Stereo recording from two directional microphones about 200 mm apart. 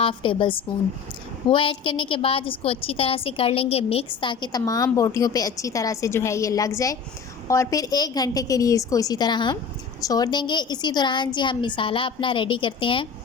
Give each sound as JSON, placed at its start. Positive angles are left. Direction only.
{"t": 0.0, "sound": "a woman's voice", "side_deg": 25}